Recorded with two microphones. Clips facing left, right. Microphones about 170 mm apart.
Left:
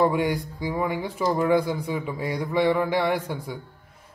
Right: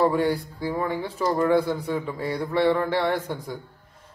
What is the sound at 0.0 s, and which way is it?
A man's voice, 15° left (ahead or behind).